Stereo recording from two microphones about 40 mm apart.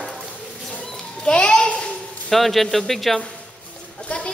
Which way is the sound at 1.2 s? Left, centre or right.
Left.